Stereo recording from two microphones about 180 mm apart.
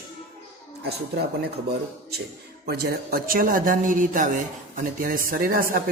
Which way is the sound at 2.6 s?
60° right (ahead or behind).